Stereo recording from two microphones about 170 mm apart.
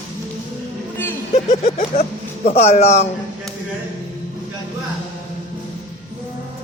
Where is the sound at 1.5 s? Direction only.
50° left (ahead or behind).